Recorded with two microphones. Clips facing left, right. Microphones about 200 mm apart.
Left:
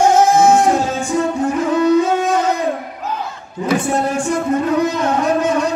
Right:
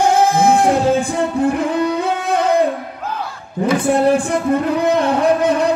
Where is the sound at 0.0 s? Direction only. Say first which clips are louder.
Left 2 dB; 60° right (ahead or behind).